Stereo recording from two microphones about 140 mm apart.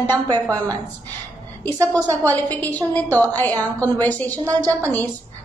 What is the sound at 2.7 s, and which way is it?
Speech, 25° right (ahead or behind).